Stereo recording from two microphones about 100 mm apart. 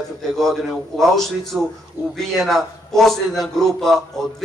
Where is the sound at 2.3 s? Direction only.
Centre (ahead or behind).